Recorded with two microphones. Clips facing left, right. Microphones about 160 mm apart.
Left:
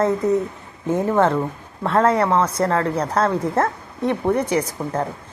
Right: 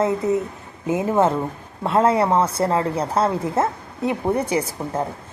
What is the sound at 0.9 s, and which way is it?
A woman's voice, 5° right (ahead or behind).